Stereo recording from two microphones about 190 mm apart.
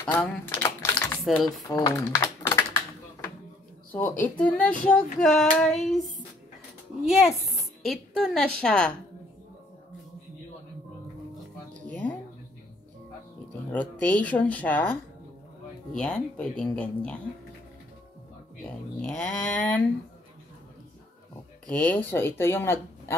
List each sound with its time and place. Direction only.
0.0 s typing: 10° left (ahead or behind)
1.2 s speech: centre (ahead or behind)
1.7 s typing: 20° left (ahead or behind)
3.9 s speech: 10° left (ahead or behind)
7.1 s speech: centre (ahead or behind)
11.9 s music: 5° left (ahead or behind)
13.7 s speech: 10° left (ahead or behind)
16.0 s speech: 5° left (ahead or behind)
18.7 s speech: 5° left (ahead or behind)
21.6 s speech: 5° left (ahead or behind)